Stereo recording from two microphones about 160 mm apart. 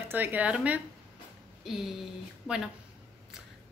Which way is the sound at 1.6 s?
Centre (ahead or behind).